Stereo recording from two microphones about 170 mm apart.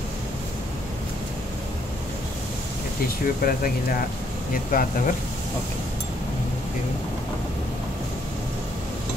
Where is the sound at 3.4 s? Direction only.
55° left (ahead or behind).